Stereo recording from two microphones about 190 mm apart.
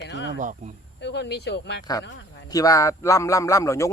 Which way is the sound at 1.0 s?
60° left (ahead or behind).